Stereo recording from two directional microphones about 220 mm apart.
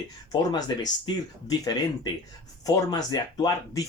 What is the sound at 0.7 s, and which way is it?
Speech, 20° left (ahead or behind).